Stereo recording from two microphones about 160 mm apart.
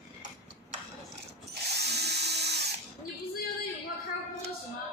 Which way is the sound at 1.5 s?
90° right.